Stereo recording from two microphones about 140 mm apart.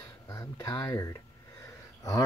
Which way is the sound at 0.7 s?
25° left (ahead or behind).